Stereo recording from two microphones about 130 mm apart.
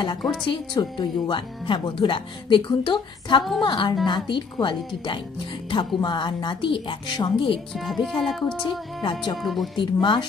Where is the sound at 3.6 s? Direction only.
35° left (ahead or behind).